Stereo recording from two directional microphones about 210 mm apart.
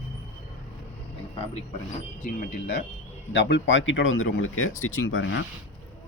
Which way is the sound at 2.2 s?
45° left (ahead or behind).